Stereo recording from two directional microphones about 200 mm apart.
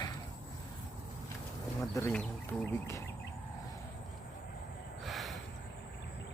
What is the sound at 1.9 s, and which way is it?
Speech, 5° left (ahead or behind).